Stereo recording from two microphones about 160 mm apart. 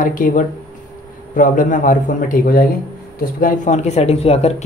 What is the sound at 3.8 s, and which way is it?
Speech, 40° left (ahead or behind).